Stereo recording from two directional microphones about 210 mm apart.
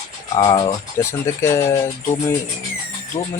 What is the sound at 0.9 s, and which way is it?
Speech, 15° left (ahead or behind).